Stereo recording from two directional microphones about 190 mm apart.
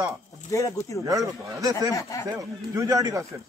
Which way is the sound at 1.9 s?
15° left (ahead or behind).